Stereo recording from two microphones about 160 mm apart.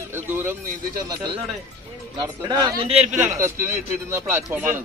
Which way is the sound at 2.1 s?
25° right (ahead or behind).